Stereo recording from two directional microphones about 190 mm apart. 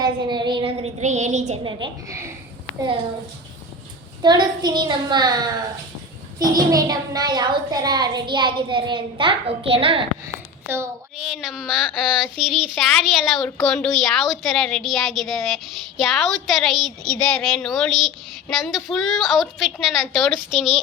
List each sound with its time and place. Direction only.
0.0 s a sound: 25° right (ahead or behind)
1.6 s a child's voice: 20° right (ahead or behind)
4.2 s a child's voice: 20° right (ahead or behind)
10.7 s a child's voice: 10° right (ahead or behind)